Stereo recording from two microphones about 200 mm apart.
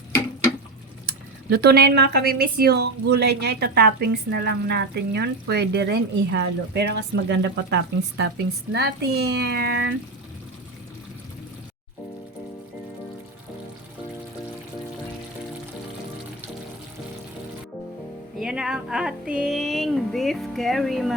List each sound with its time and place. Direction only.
1.0 s speech: 50° right (ahead or behind)
18.3 s speech: 5° right (ahead or behind)